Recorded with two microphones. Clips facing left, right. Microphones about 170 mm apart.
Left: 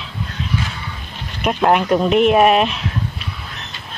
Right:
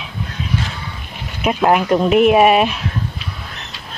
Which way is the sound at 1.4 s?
5° right (ahead or behind).